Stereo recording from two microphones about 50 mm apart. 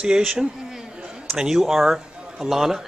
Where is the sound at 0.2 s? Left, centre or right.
Centre.